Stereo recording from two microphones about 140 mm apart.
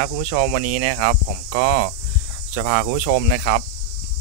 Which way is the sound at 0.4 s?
45° right (ahead or behind).